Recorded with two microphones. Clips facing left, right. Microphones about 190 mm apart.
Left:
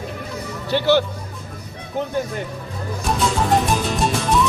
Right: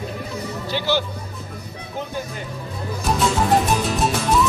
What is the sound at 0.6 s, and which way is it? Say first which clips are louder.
Speech: left 6 dB; 60° left (ahead or behind).